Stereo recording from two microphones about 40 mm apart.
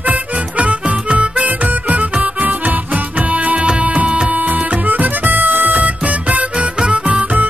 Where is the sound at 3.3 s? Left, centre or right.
Right.